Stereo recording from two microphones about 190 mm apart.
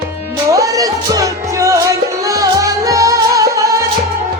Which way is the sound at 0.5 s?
20° right (ahead or behind).